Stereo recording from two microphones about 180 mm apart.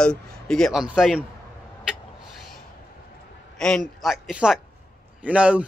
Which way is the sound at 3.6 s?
Centre (ahead or behind).